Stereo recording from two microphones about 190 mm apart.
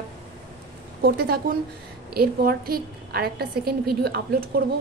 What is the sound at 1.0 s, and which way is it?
A woman's voice, 55° right (ahead or behind).